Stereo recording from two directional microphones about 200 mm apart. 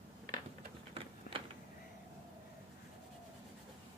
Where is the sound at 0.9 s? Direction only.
25° right (ahead or behind).